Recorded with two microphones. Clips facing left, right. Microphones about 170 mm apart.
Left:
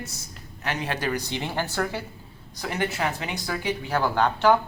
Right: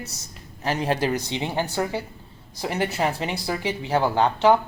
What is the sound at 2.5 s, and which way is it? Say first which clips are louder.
Speech: right 3 dB; 30° right (ahead or behind).